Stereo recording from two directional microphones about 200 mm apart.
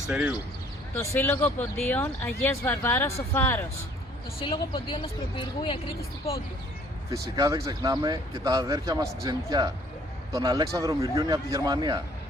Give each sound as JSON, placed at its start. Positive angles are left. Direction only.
{"t": 0.1, "sound": "speech", "side_deg": -5}
{"t": 0.9, "sound": "speech", "side_deg": 10}
{"t": 4.4, "sound": "speech", "side_deg": 25}
{"t": 7.3, "sound": "speech", "side_deg": -20}